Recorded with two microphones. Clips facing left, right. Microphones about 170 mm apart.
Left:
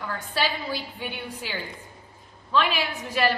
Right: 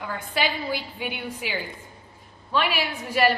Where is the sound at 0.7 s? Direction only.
10° right (ahead or behind).